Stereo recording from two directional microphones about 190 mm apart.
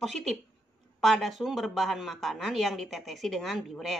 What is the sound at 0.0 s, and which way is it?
A woman's voice, centre (ahead or behind).